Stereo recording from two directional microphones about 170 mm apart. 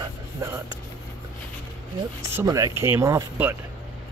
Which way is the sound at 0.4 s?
20° right (ahead or behind).